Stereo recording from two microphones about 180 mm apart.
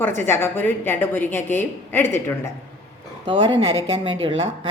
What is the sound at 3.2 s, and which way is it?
Speech, 25° right (ahead or behind).